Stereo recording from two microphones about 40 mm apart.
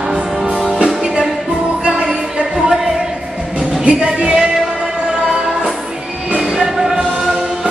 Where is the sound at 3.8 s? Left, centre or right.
Right.